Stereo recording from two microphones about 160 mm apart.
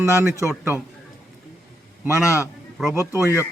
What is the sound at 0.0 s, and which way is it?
Speech, 20° right (ahead or behind).